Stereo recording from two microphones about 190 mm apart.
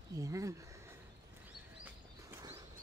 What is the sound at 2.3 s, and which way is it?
Horse, 15° right (ahead or behind).